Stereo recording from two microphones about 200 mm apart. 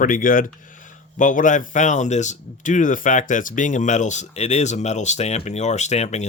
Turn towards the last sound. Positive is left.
turn(degrees=35)  # may be behind; listen again after turning